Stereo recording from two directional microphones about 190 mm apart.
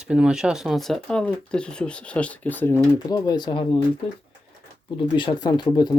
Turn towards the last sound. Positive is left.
turn(degrees=20)  # may be behind; listen again after turning